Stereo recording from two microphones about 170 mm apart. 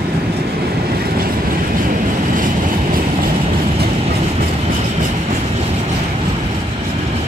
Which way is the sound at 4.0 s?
40° right (ahead or behind).